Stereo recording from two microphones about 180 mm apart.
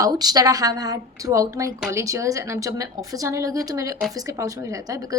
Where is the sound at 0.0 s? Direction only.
20° right (ahead or behind).